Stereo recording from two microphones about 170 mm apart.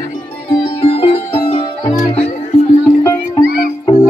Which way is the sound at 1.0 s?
35° left (ahead or behind).